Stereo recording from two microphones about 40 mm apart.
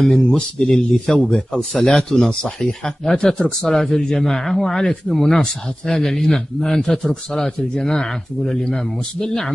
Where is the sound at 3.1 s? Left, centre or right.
Left.